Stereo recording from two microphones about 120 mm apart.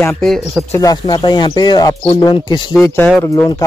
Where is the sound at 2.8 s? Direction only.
20° left (ahead or behind).